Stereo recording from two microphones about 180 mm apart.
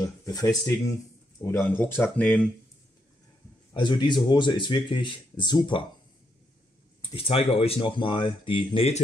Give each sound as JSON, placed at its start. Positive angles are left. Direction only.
{"t": 0.0, "sound": "speech", "side_deg": 20}
{"t": 3.7, "sound": "speech", "side_deg": 25}
{"t": 7.0, "sound": "speech", "side_deg": 30}